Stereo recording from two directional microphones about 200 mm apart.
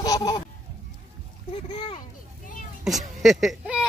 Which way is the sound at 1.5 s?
30° left (ahead or behind).